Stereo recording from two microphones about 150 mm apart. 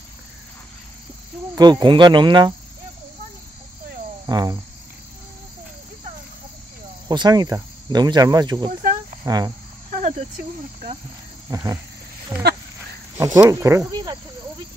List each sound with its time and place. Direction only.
1.5 s speech: 30° right (ahead or behind)
4.3 s speech: 30° right (ahead or behind)
7.1 s speech: 25° right (ahead or behind)
9.2 s cricket: 25° right (ahead or behind)
11.5 s speech: 25° right (ahead or behind)